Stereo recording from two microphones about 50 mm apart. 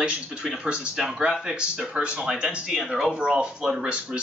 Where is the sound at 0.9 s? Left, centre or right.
Centre.